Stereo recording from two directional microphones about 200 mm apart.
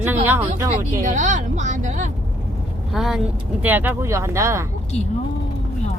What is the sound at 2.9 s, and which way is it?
Speech, centre (ahead or behind).